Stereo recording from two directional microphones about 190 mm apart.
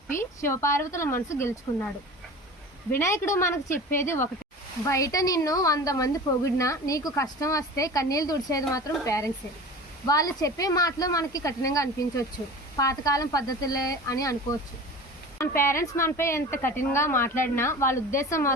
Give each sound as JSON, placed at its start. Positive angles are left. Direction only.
{"t": 0.1, "sound": "a woman's voice", "side_deg": 15}
{"t": 2.9, "sound": "a woman's voice", "side_deg": 15}